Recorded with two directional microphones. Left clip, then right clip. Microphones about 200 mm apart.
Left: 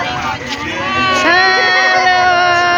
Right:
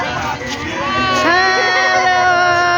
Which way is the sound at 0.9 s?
Centre (ahead or behind).